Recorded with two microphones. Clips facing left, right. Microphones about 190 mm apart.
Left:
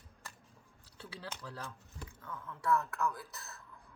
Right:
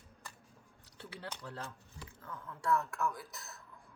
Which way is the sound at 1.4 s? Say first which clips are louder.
Right 1 dB; 25° right (ahead or behind).